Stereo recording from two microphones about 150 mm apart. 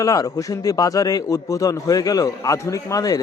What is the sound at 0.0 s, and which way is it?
A man's voice, 25° left (ahead or behind).